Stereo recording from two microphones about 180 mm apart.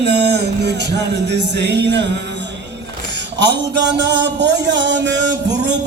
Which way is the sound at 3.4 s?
75° right (ahead or behind).